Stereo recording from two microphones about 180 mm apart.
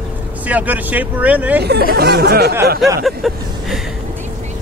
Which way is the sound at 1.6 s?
60° right (ahead or behind).